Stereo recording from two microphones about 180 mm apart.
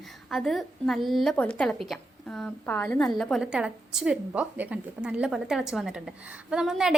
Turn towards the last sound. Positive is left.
turn(degrees=-5)  # may be behind; listen again after turning